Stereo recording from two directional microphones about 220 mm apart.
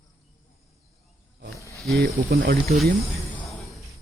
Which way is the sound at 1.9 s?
45° right (ahead or behind).